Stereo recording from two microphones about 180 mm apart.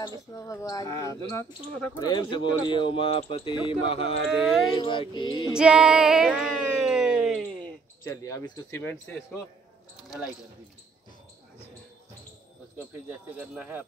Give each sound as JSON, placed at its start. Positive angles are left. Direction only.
{"t": 0.3, "sound": "speech", "side_deg": 15}
{"t": 4.3, "sound": "female singing", "side_deg": 0}
{"t": 4.7, "sound": "speech", "side_deg": 25}
{"t": 5.5, "sound": "female singing", "side_deg": -5}
{"t": 8.0, "sound": "speech", "side_deg": 20}